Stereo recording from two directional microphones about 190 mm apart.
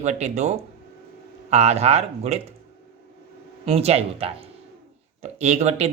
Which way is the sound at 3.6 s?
30° right (ahead or behind).